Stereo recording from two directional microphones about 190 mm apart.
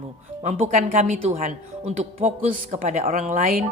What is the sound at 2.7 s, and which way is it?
Speech, 45° right (ahead or behind).